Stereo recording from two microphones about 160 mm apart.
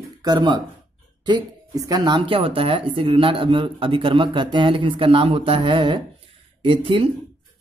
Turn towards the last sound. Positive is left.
turn(degrees=-35)  # may be behind; listen again after turning